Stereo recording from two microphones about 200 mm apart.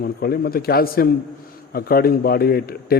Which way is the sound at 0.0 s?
50° left (ahead or behind).